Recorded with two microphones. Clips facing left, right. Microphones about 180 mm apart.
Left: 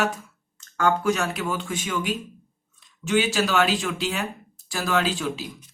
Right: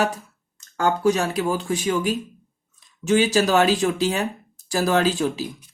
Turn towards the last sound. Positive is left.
turn(degrees=-40)  # may be behind; listen again after turning